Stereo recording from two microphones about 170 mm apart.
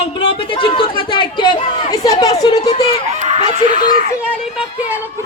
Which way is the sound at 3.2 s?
45° right (ahead or behind).